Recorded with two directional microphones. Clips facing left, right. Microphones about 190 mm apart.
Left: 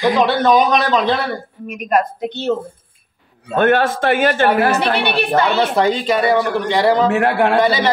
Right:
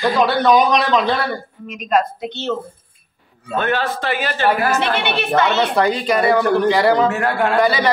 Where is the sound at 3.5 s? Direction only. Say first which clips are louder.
Left 6 dB; 55° left (ahead or behind).